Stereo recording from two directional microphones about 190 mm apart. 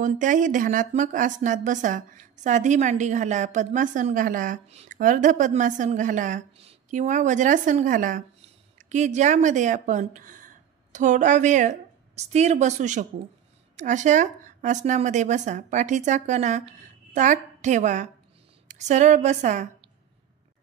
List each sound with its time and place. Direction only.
0.0 s speech: 40° right (ahead or behind)